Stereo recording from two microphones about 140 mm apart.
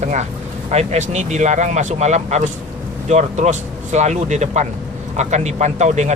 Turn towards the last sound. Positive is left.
turn(degrees=-55)  # may be behind; listen again after turning